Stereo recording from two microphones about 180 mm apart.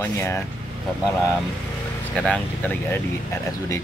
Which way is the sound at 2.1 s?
5° left (ahead or behind).